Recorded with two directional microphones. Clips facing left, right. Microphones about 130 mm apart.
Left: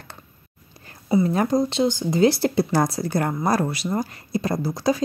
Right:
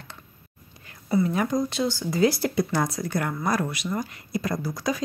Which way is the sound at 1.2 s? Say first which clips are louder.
Left 4 dB; 35° left (ahead or behind).